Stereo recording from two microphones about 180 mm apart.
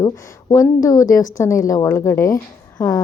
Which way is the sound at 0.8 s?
20° left (ahead or behind).